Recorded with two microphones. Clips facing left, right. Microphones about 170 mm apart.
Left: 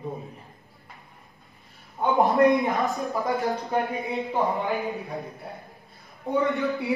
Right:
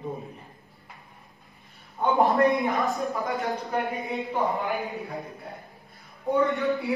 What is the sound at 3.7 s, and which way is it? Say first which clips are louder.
Speech: left 2 dB; 20° left (ahead or behind).